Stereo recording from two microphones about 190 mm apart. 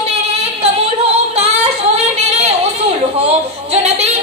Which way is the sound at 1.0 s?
35° right (ahead or behind).